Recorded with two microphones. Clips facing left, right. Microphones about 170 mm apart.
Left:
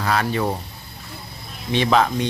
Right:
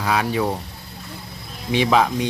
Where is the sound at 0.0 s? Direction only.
10° right (ahead or behind).